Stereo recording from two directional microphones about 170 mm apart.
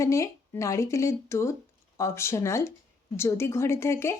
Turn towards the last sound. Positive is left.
turn(degrees=15)  # may be behind; listen again after turning